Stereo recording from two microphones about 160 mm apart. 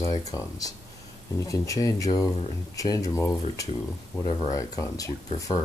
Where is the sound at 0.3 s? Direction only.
20° left (ahead or behind).